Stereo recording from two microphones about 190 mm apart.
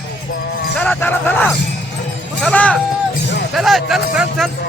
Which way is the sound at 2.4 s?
5° left (ahead or behind).